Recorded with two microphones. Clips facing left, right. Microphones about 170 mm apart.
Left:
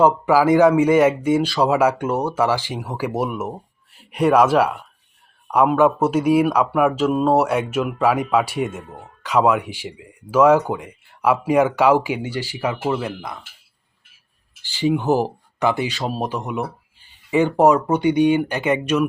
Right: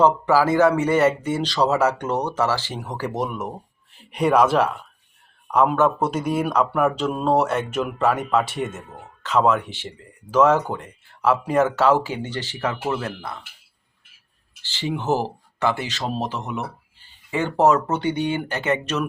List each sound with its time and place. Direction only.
0.0 s speech: 15° left (ahead or behind)
14.6 s speech: 15° left (ahead or behind)